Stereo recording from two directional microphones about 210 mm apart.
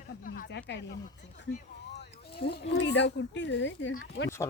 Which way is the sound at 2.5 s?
50° left (ahead or behind).